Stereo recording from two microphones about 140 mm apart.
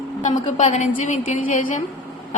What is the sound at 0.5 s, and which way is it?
A woman's voice, 55° left (ahead or behind).